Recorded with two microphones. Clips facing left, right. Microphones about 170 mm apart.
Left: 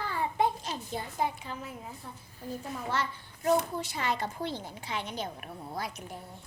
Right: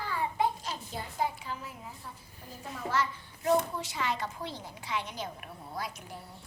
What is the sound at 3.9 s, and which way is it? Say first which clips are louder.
Speech: left 1 dB; 35° left (ahead or behind).